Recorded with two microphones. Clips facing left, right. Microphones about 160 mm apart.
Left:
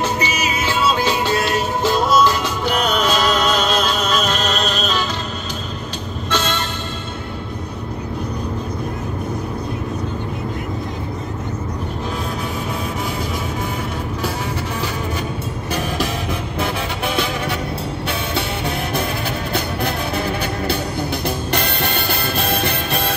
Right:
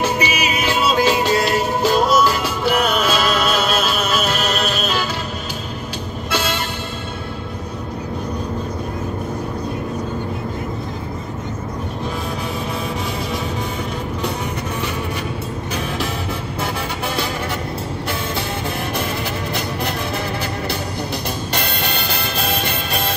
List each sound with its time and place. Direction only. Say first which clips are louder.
0.0 s music: right 1 dB; 10° right (ahead or behind)
6.3 s music: left 1 dB; 10° right (ahead or behind)